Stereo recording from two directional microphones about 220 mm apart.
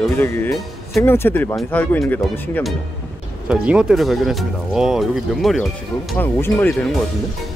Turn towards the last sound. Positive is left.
turn(degrees=5)  # may be behind; listen again after turning